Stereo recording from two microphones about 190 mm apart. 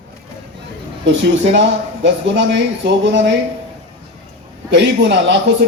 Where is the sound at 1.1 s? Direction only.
70° right (ahead or behind).